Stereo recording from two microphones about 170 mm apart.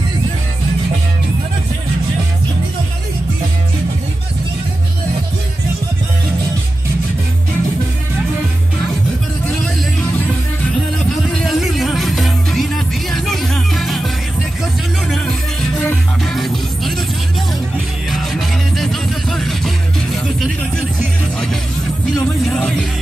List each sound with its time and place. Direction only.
11.2 s music: centre (ahead or behind)
22.2 s music: 5° left (ahead or behind)